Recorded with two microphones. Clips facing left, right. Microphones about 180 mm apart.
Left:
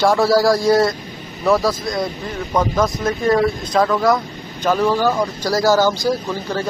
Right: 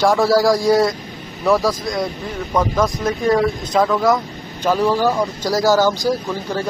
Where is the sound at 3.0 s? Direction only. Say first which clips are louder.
Even; 15° right (ahead or behind).